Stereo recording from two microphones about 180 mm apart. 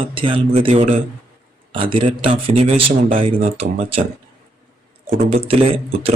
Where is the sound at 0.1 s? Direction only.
30° right (ahead or behind).